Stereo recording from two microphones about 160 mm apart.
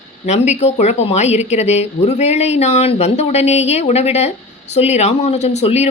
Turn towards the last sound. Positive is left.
turn(degrees=40)  # may be behind; listen again after turning